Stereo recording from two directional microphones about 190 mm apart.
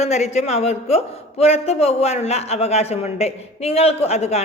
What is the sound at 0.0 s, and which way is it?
A man's voice, 35° left (ahead or behind).